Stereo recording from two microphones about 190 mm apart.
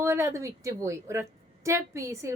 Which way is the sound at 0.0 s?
15° right (ahead or behind).